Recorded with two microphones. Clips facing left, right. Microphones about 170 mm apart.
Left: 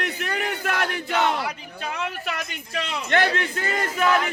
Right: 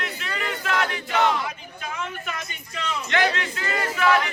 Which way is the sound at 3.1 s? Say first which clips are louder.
Left 2 dB; 50° left (ahead or behind).